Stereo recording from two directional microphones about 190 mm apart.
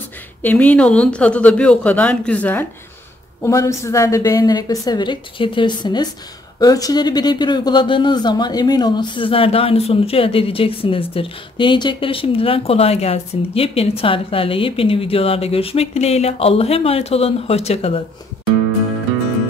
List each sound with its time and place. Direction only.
0.4 s speech: 10° left (ahead or behind); by 18.0 s 30° left (ahead or behind)